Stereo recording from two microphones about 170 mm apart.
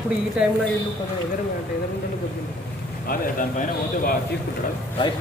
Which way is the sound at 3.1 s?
55° left (ahead or behind).